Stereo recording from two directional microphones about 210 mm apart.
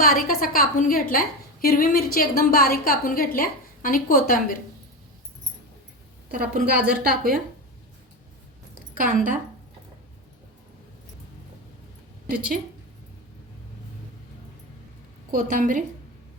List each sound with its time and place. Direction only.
0.0 s a woman's voice: 45° left (ahead or behind)
6.2 s a woman's voice: 45° right (ahead or behind)
9.0 s a woman's voice: 40° right (ahead or behind)
15.3 s a woman's voice: 40° right (ahead or behind)